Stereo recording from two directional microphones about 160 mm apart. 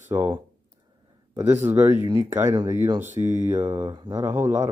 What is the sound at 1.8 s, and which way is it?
Speech, 15° right (ahead or behind).